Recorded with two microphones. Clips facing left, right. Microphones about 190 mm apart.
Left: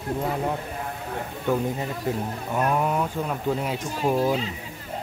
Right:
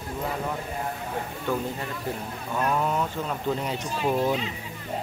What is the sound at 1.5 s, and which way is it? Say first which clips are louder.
Speech: left 5 dB; 20° left (ahead or behind).